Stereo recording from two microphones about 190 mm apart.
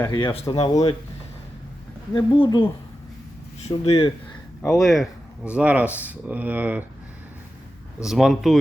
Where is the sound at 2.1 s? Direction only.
25° left (ahead or behind).